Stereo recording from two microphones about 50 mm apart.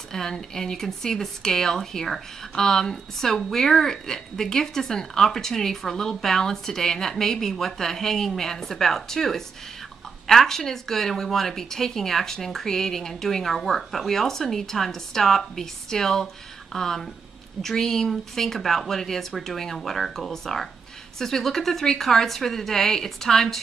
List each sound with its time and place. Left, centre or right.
0.1 s a woman's voice: centre